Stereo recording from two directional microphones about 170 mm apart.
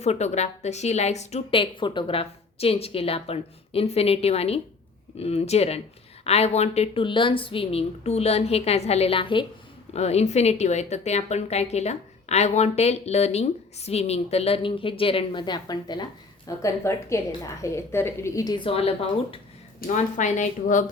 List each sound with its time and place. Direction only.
0.0 s a woman's voice: 40° left (ahead or behind)
19.9 s speech: 45° left (ahead or behind)